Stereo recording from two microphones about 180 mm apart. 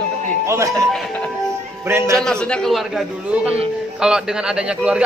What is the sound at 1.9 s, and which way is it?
Speech, 15° right (ahead or behind).